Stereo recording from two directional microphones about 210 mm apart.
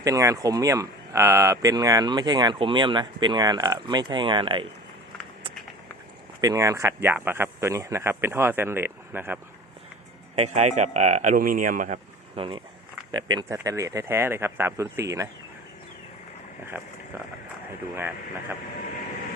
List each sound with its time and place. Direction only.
0.0 s speech: 15° right (ahead or behind)
6.4 s speech: 15° right (ahead or behind)
10.3 s speech: 30° right (ahead or behind)
12.4 s speech: 25° right (ahead or behind)